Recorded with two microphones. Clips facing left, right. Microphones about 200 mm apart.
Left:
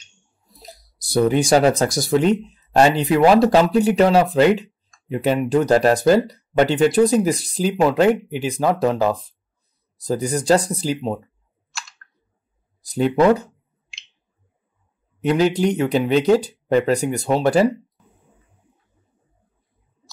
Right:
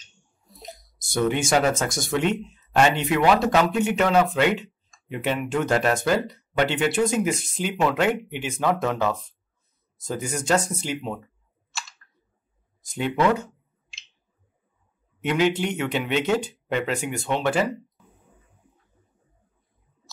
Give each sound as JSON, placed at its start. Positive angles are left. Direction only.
{"t": 0.0, "sound": "a sound", "side_deg": 0}
{"t": 0.9, "sound": "speech", "side_deg": 35}
{"t": 11.7, "sound": "clicking", "side_deg": 0}
{"t": 12.8, "sound": "speech", "side_deg": 35}
{"t": 15.2, "sound": "speech", "side_deg": 40}